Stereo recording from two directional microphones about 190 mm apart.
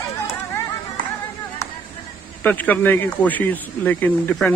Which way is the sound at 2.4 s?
10° left (ahead or behind).